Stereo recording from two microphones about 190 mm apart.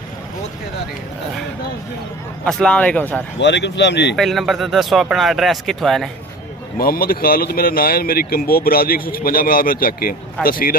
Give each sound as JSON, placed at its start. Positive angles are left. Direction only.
{"t": 2.4, "sound": "speech", "side_deg": 5}
{"t": 3.3, "sound": "speech", "side_deg": 65}
{"t": 4.2, "sound": "speech", "side_deg": 0}
{"t": 6.8, "sound": "speech", "side_deg": 50}